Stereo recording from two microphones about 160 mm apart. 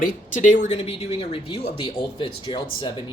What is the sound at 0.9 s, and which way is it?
Speech, 35° left (ahead or behind).